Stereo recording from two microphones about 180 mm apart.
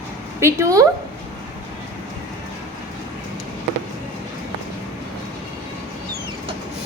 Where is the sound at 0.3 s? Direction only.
15° right (ahead or behind).